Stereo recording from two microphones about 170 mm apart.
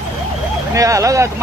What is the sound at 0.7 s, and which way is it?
Speech, 20° right (ahead or behind).